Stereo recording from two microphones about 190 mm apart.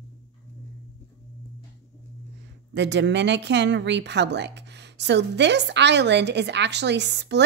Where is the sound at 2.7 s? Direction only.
65° right (ahead or behind).